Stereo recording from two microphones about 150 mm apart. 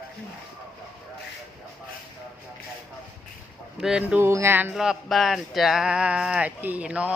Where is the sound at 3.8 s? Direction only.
5° right (ahead or behind).